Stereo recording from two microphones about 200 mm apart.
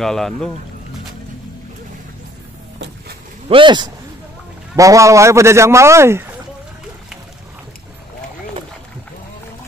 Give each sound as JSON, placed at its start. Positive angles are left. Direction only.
{"t": 0.0, "sound": "speech", "side_deg": 0}
{"t": 3.4, "sound": "speech", "side_deg": -25}